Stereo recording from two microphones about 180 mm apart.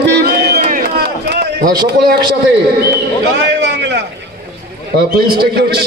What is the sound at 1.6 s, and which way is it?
Speech, 55° right (ahead or behind).